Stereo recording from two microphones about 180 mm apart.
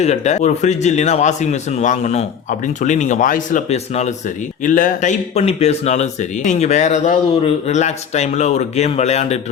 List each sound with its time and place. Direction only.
0.0 s speech: 40° left (ahead or behind)